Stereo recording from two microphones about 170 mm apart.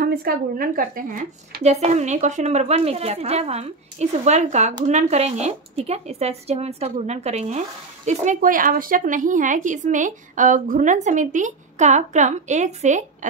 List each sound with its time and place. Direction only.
0.0 s a woman's voice: 60° right (ahead or behind); by 13.3 s 45° right (ahead or behind)